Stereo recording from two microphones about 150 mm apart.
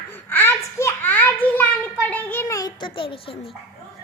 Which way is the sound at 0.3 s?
15° left (ahead or behind).